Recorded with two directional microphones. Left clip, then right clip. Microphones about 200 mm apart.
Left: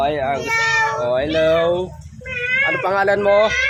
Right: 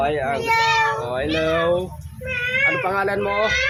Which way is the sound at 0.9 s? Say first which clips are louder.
Left 5 dB; 30° left (ahead or behind).